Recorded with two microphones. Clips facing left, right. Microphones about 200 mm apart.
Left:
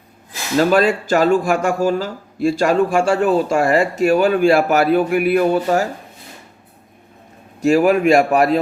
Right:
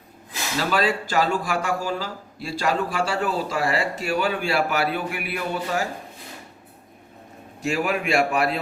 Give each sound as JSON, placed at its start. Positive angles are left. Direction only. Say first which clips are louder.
{"t": 0.5, "sound": "speech", "louder": "left 9 dB", "side_deg": 50}
{"t": 7.6, "sound": "a man's voice", "louder": "left 11 dB", "side_deg": 40}